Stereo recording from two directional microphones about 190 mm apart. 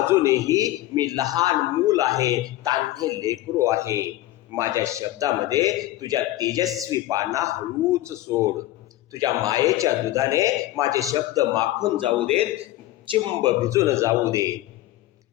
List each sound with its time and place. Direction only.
0.0 s a man's voice: 15° right (ahead or behind)
13.7 s speech: 15° right (ahead or behind)